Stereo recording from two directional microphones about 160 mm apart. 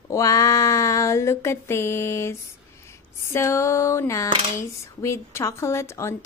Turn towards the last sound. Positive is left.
turn(degrees=15)  # may be behind; listen again after turning